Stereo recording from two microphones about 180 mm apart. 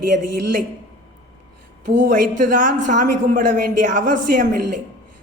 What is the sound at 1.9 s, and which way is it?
Speech, 75° right (ahead or behind).